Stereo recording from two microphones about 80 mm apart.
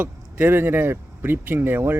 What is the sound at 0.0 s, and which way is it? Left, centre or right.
Speech, right.